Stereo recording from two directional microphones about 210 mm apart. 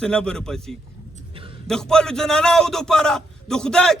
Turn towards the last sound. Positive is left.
turn(degrees=5)  # may be behind; listen again after turning